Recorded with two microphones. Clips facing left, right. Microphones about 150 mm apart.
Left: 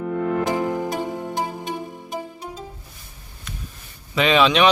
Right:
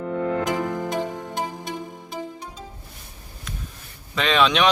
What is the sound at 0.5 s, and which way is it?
Music, 10° left (ahead or behind).